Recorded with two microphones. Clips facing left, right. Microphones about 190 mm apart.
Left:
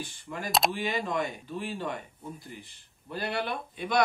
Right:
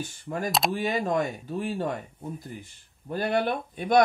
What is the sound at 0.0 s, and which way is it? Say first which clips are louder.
Speech: right 6 dB; 45° right (ahead or behind).